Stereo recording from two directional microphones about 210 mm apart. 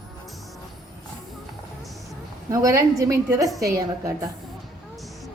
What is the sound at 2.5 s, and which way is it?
A woman's voice, 15° right (ahead or behind).